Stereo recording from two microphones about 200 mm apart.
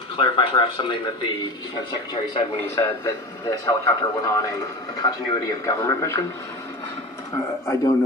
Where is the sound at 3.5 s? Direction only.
15° left (ahead or behind).